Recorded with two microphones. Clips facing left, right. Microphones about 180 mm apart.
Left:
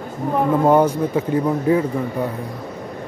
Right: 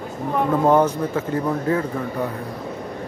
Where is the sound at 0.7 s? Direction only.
10° left (ahead or behind).